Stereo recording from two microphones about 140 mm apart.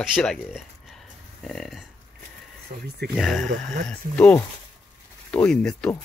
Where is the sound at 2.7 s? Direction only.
70° right (ahead or behind).